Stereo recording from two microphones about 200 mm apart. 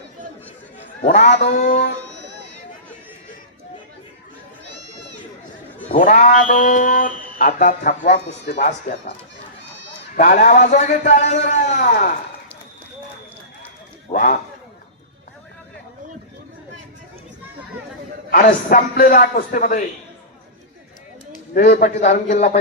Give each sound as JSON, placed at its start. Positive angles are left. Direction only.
{"t": 1.0, "sound": "speech", "side_deg": 40}
{"t": 5.9, "sound": "a man's voice", "side_deg": 40}
{"t": 10.2, "sound": "speech", "side_deg": 45}
{"t": 14.1, "sound": "a man's voice", "side_deg": 45}
{"t": 18.3, "sound": "a man's voice", "side_deg": 45}
{"t": 21.3, "sound": "speech", "side_deg": 45}